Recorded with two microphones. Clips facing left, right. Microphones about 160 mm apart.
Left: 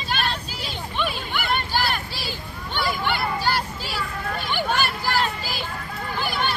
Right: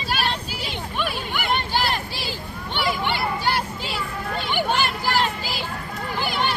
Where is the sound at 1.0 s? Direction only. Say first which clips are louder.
Even; 10° right (ahead or behind).